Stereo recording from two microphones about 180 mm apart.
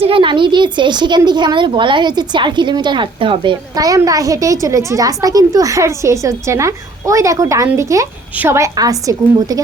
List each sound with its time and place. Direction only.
0.0 s a woman's voice: 30° right (ahead or behind)